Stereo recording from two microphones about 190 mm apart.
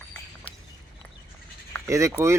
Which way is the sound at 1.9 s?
15° right (ahead or behind).